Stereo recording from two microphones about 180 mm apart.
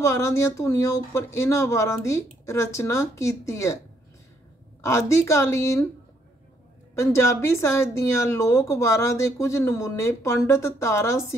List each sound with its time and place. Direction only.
0.0 s speech: 15° left (ahead or behind)
4.8 s speech: 15° left (ahead or behind)
7.0 s speech: 15° left (ahead or behind)